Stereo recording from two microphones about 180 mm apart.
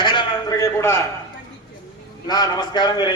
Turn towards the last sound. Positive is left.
turn(degrees=20)  # may be behind; listen again after turning